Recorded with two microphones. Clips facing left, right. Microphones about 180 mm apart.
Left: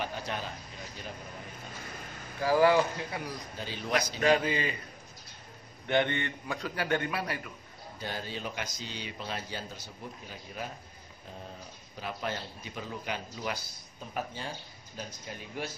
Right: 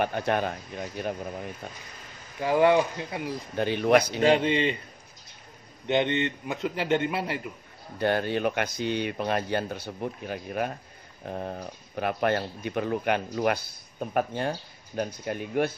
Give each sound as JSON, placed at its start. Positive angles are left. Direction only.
{"t": 0.0, "sound": "speech", "side_deg": -60}
{"t": 2.4, "sound": "a man's voice", "side_deg": -20}
{"t": 3.5, "sound": "speech", "side_deg": -65}
{"t": 4.2, "sound": "a man's voice", "side_deg": -25}
{"t": 5.9, "sound": "a man's voice", "side_deg": -20}
{"t": 8.0, "sound": "speech", "side_deg": -65}